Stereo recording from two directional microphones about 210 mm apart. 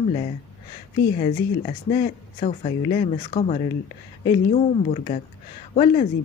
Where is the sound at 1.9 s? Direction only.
30° left (ahead or behind).